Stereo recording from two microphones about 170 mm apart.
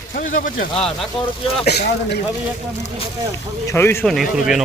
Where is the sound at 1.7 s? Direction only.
75° left (ahead or behind).